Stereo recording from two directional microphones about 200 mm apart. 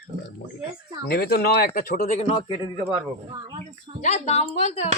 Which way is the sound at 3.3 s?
20° right (ahead or behind).